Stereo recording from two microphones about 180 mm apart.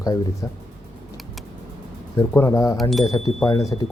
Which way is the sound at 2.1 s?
15° left (ahead or behind).